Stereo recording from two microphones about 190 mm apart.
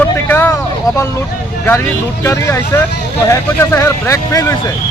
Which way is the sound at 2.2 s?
15° left (ahead or behind).